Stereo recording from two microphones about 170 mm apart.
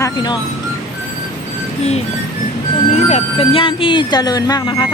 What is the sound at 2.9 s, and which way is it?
Speech, 40° left (ahead or behind).